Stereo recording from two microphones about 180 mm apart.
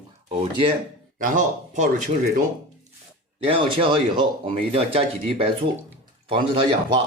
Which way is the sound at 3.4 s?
30° right (ahead or behind).